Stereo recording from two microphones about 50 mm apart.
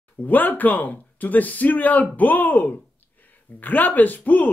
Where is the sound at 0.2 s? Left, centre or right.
Left.